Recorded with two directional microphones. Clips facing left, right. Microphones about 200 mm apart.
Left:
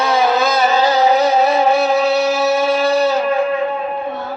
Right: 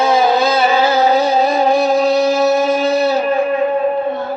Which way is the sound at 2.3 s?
15° right (ahead or behind).